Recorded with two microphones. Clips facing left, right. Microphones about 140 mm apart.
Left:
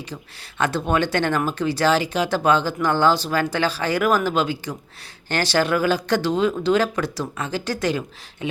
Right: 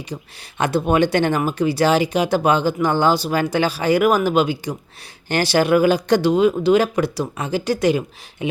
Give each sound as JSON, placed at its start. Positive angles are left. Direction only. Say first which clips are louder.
{"t": 0.6, "sound": "speech", "louder": "right 4 dB", "side_deg": -15}